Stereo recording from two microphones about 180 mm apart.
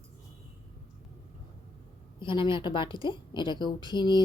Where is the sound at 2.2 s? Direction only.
25° left (ahead or behind).